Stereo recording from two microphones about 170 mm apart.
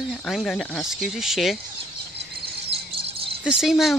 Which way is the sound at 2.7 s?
35° right (ahead or behind).